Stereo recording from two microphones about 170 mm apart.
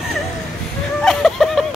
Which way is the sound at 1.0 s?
Centre (ahead or behind).